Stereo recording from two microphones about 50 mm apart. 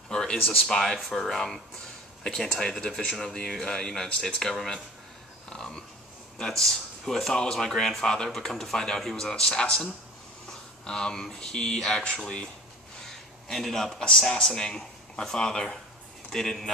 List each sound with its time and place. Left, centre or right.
0.1 s a sound: centre
0.6 s speech: centre
5.5 s a sound: centre
6.4 s speech: centre
10.9 s speech: centre
13.5 s speech: centre